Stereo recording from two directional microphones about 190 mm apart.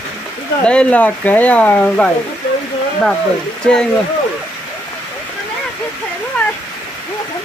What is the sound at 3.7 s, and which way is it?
Speech, 5° left (ahead or behind).